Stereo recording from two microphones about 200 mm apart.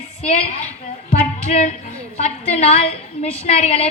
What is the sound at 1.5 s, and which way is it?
A woman's voice, 35° left (ahead or behind).